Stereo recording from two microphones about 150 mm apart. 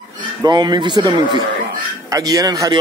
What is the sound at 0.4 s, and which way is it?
Speech, 30° right (ahead or behind).